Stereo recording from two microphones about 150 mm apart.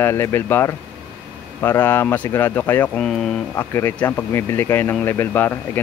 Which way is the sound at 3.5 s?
15° left (ahead or behind).